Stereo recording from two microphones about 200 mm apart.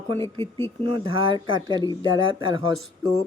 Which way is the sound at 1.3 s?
25° right (ahead or behind).